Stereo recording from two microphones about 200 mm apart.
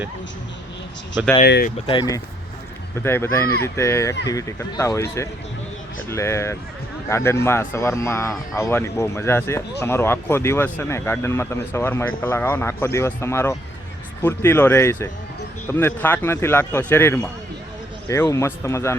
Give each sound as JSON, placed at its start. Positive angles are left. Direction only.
{"t": 1.5, "sound": "speech", "side_deg": 55}
{"t": 1.9, "sound": "speech", "side_deg": 20}